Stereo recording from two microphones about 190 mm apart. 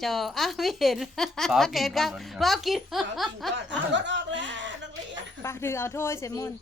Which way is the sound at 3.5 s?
70° right (ahead or behind).